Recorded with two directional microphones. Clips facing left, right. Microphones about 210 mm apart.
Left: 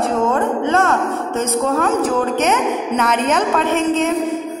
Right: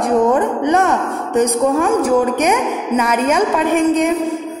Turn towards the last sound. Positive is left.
turn(degrees=-15)  # may be behind; listen again after turning